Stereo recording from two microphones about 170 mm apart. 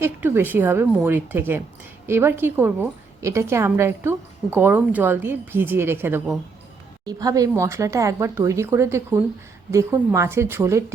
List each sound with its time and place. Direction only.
0.0 s speech: 15° right (ahead or behind)